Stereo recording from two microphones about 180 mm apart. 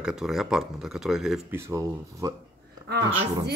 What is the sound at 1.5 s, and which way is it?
Speech, 15° right (ahead or behind).